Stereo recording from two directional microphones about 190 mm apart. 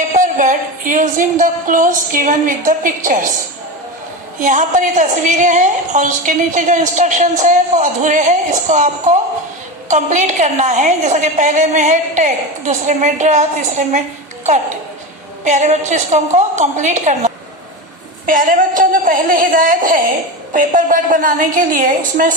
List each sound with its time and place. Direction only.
0.1 s a woman's voice: 45° right (ahead or behind)
4.4 s a woman's voice: 40° right (ahead or behind)
15.4 s a woman's voice: 40° right (ahead or behind)